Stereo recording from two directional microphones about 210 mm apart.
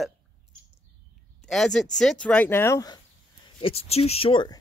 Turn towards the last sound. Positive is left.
turn(degrees=20)  # may be behind; listen again after turning